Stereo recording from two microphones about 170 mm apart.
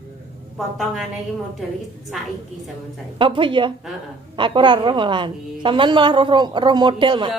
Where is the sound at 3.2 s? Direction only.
30° right (ahead or behind).